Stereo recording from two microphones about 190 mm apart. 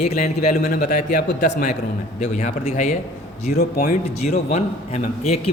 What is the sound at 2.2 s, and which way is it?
Speech, 35° left (ahead or behind).